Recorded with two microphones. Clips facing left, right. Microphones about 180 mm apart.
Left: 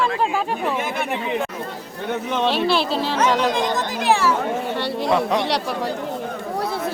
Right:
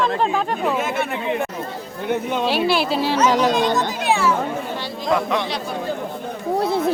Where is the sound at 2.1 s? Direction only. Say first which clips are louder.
Right 1 dB; 10° right (ahead or behind).